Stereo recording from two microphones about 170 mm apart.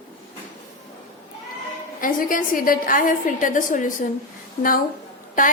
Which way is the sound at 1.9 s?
55° left (ahead or behind).